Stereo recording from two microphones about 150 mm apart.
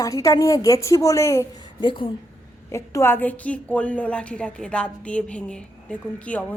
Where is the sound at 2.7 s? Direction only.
20° left (ahead or behind).